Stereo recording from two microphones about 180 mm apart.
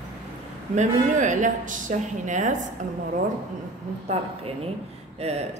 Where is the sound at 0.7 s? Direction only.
45° right (ahead or behind).